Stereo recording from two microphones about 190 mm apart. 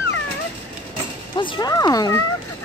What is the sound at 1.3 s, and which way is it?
Speech, 25° left (ahead or behind).